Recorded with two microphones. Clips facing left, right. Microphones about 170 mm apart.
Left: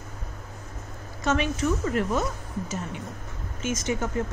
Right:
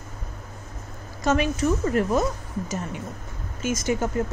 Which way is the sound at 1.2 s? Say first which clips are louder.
Right 3 dB; 40° right (ahead or behind).